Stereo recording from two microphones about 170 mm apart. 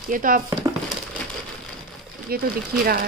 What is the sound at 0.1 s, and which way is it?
Speech, 55° right (ahead or behind).